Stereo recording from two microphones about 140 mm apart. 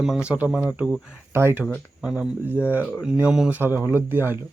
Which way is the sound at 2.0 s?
5° right (ahead or behind).